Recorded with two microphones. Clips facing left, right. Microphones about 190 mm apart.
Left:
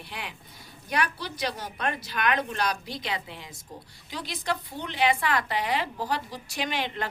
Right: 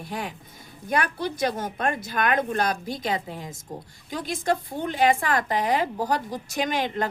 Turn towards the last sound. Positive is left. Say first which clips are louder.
# right 5 dB
turn(degrees=-45)  # may be behind; listen again after turning